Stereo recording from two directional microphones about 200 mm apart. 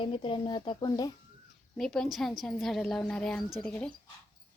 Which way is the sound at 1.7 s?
Centre (ahead or behind).